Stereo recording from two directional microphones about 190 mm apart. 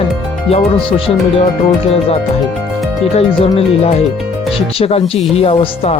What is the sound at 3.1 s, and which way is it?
Speech, 30° left (ahead or behind).